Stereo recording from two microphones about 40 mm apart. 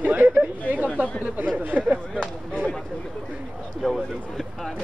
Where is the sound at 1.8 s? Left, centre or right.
Right.